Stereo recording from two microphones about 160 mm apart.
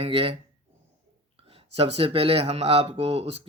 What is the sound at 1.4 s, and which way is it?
Speech, 35° right (ahead or behind).